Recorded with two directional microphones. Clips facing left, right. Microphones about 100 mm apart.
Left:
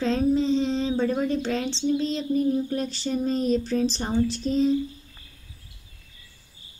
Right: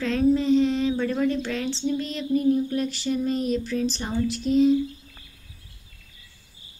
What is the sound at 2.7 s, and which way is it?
Speech, 35° left (ahead or behind).